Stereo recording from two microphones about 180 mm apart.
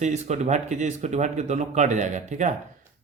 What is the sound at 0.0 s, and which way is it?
A man's voice, 40° right (ahead or behind).